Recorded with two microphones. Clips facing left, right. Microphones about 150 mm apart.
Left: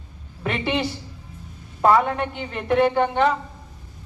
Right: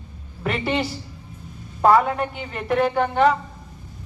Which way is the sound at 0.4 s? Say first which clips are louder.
Even; 5° right (ahead or behind).